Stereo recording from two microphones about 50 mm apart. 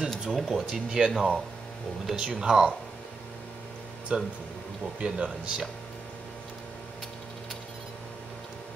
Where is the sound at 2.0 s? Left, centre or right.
Centre.